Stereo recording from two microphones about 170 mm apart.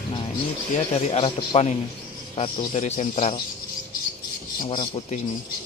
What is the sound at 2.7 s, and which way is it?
Speech, 45° left (ahead or behind).